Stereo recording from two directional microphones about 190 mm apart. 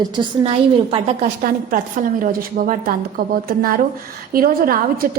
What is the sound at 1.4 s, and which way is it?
A woman's voice, 45° right (ahead or behind).